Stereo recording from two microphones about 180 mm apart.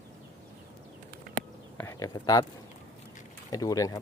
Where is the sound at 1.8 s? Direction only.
15° left (ahead or behind).